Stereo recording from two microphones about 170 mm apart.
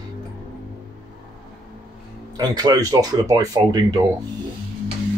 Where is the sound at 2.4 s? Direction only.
25° right (ahead or behind).